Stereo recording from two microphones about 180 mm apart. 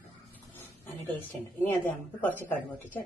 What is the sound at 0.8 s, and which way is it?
Speech, 10° left (ahead or behind).